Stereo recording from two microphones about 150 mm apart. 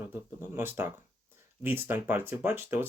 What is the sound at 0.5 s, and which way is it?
Speech, 15° right (ahead or behind).